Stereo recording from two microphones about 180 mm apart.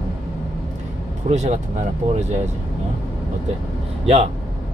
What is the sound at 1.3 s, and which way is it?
Speech, 40° right (ahead or behind).